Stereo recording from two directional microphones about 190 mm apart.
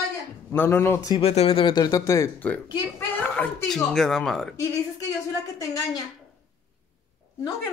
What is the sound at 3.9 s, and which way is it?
Speech, centre (ahead or behind).